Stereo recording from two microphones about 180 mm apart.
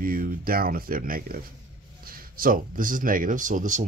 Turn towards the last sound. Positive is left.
turn(degrees=-45)  # may be behind; listen again after turning